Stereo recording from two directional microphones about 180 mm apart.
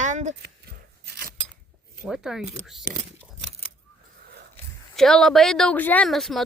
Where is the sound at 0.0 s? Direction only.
40° right (ahead or behind).